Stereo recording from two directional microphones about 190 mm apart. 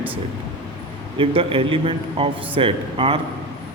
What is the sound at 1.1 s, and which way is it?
A man's voice, 30° right (ahead or behind).